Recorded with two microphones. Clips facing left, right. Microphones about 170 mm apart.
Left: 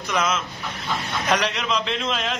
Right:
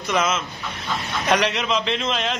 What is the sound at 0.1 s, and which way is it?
A man's voice, centre (ahead or behind).